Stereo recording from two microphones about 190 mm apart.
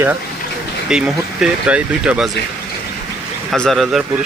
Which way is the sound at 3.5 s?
Centre (ahead or behind).